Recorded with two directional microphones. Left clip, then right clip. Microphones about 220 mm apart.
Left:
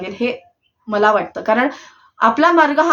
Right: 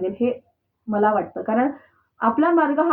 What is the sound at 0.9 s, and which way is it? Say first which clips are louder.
Speech: left 5 dB; 20° left (ahead or behind).